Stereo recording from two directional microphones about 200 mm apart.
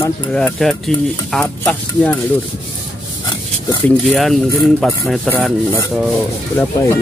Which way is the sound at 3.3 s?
20° left (ahead or behind).